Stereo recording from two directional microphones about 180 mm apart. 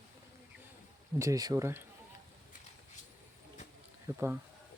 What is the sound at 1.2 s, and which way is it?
Speech, 20° right (ahead or behind).